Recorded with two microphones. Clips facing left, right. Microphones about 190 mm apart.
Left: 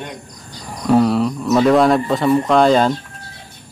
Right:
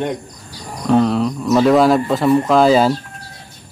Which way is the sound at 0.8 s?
5° left (ahead or behind).